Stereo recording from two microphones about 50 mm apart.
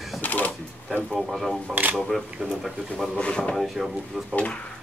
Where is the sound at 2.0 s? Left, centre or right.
Centre.